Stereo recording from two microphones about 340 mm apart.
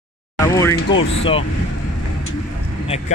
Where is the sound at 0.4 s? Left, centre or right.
Centre.